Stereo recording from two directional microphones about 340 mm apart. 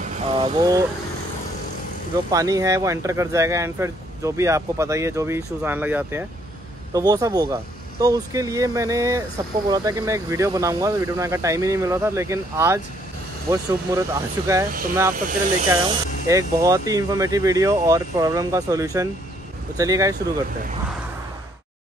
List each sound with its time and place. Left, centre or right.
0.0 s vehicle: centre
2.3 s speech: centre
15.1 s speech: right
15.7 s speech: centre